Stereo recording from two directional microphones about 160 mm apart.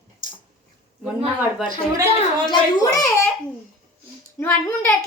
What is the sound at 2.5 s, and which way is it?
Speech, 25° left (ahead or behind).